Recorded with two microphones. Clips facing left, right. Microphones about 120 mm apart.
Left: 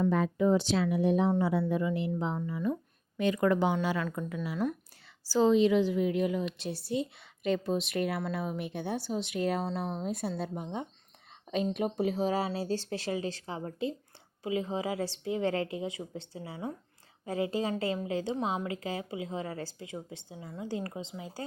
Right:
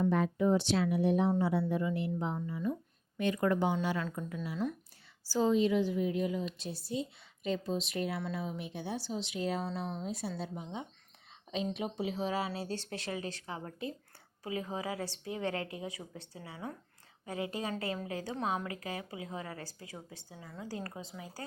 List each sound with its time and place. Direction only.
1.3 s a woman's voice: 90° left; by 4.7 s 60° left (ahead or behind)
5.3 s a woman's voice: 90° left; by 21.4 s 25° left (ahead or behind)